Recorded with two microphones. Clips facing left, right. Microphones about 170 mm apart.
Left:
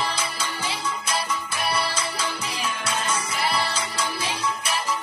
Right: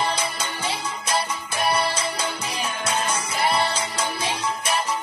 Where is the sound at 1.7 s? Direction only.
35° right (ahead or behind).